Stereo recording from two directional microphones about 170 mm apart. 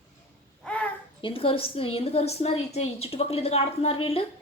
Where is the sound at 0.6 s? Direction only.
5° left (ahead or behind).